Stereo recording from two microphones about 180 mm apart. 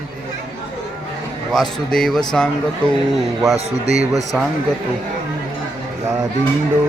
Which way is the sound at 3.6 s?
35° right (ahead or behind).